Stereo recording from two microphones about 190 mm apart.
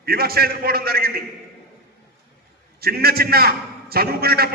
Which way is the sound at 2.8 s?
55° right (ahead or behind).